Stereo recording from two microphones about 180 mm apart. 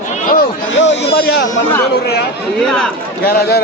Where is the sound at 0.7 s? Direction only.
80° left.